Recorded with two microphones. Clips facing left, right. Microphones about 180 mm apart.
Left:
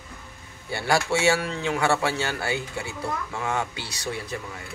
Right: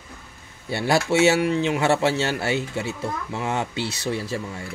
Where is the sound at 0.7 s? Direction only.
25° right (ahead or behind).